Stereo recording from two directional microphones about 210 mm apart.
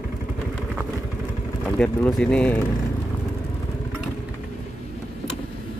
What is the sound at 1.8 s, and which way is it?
Speech, 5° left (ahead or behind).